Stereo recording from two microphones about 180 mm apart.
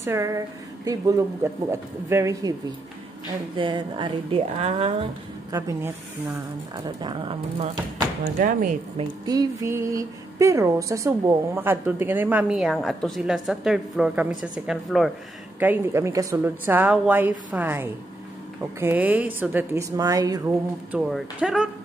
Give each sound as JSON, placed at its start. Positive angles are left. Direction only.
{"t": 0.0, "sound": "a woman's voice", "side_deg": -15}
{"t": 3.5, "sound": "a woman's voice", "side_deg": -25}
{"t": 5.5, "sound": "a woman's voice", "side_deg": -15}
{"t": 8.4, "sound": "speech", "side_deg": -45}
{"t": 9.2, "sound": "a woman's voice", "side_deg": -20}
{"t": 15.6, "sound": "a woman's voice", "side_deg": -10}
{"t": 20.9, "sound": "speech", "side_deg": -5}